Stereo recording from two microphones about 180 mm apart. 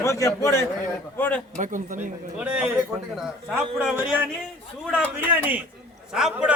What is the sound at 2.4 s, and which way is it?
Speech, 5° right (ahead or behind).